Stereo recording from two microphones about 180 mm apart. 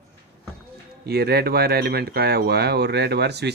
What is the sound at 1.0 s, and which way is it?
Speech, 65° right (ahead or behind).